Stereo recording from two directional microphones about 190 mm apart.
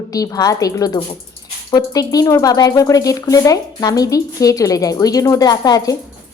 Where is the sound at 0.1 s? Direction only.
20° left (ahead or behind).